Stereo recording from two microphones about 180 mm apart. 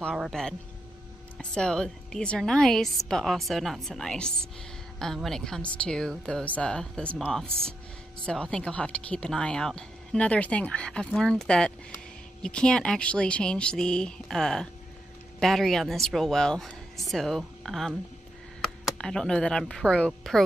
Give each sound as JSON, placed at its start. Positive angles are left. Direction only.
{"t": 0.0, "sound": "speech", "side_deg": 0}